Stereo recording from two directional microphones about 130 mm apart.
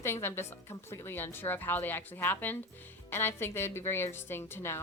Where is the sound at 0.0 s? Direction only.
20° left (ahead or behind).